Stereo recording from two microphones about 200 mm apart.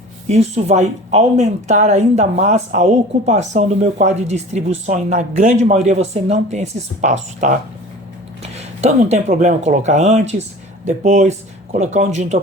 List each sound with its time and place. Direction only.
0.3 s speech: 35° right (ahead or behind)
8.5 s speech: 35° right (ahead or behind)